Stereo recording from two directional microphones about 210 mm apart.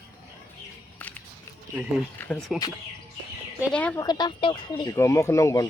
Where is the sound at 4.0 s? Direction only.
20° left (ahead or behind).